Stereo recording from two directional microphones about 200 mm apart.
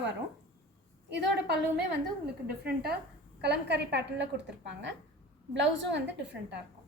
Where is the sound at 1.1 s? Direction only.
55° right (ahead or behind).